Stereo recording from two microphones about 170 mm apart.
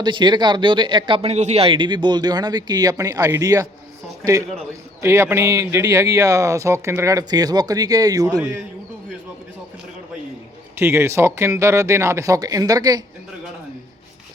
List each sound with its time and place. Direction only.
0.0 s speech: 25° right (ahead or behind)
4.9 s speech: 15° right (ahead or behind)
10.8 s speech: 15° right (ahead or behind)